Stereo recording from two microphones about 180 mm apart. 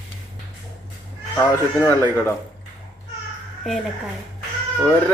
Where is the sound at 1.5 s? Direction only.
15° left (ahead or behind).